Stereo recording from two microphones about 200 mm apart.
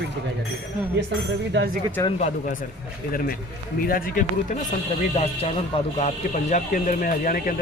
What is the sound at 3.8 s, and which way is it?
Speech, 45° left (ahead or behind).